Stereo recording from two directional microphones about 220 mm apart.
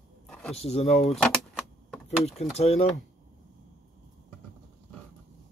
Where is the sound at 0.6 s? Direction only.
30° left (ahead or behind).